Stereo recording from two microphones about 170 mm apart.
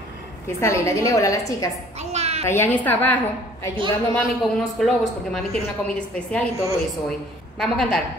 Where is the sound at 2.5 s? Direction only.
10° left (ahead or behind).